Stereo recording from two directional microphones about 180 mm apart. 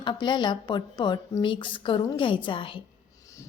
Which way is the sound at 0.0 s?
25° left (ahead or behind).